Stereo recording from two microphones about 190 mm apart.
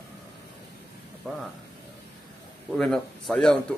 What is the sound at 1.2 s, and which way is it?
Speech, 5° left (ahead or behind).